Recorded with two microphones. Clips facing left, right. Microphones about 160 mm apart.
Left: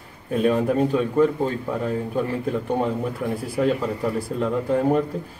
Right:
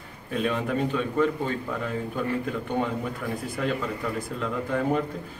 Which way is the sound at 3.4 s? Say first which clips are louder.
Left 7 dB; 35° left (ahead or behind).